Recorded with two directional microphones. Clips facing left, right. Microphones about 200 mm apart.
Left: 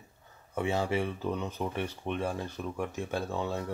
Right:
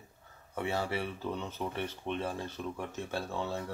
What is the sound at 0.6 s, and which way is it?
Speech, 20° left (ahead or behind).